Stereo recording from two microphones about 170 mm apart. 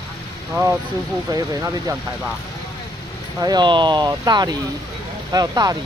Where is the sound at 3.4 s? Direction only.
25° right (ahead or behind).